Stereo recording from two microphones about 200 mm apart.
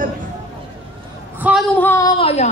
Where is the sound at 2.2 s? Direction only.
30° left (ahead or behind).